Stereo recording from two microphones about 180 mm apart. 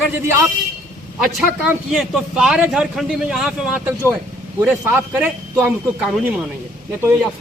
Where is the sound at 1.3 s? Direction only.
5° right (ahead or behind).